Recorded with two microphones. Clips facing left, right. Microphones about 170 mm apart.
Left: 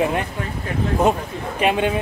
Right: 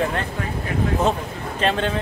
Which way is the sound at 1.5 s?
10° left (ahead or behind).